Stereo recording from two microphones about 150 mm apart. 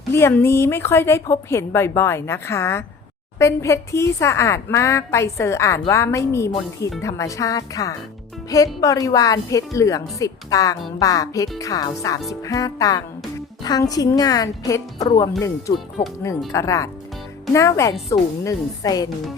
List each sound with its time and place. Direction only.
0.1 s a woman's voice: 15° left (ahead or behind)